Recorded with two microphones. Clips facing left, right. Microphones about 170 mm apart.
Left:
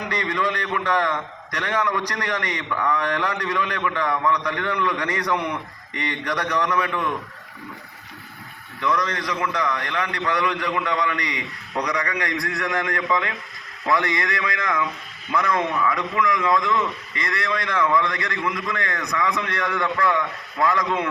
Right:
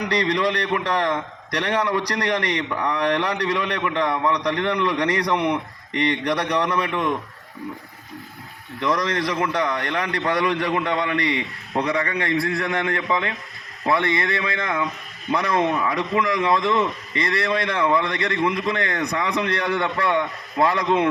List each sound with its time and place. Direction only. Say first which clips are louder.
0.2 s a man's voice: right 3 dB; 35° right (ahead or behind)
5.3 s a man's voice: right 1 dB; 15° right (ahead or behind)
6.3 s a man's voice: right 1 dB; 30° right (ahead or behind)
8.8 s a man's voice: right 2 dB; 35° right (ahead or behind)